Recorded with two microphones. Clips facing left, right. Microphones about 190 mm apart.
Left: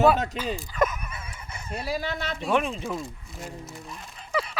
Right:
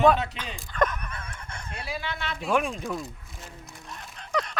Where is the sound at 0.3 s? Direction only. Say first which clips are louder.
Left 2 dB; 5° left (ahead or behind).